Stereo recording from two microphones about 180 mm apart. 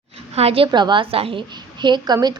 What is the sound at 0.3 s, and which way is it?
A woman's voice, 35° right (ahead or behind).